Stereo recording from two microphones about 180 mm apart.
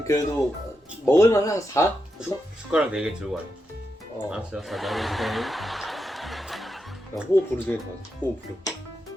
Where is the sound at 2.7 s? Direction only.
5° right (ahead or behind).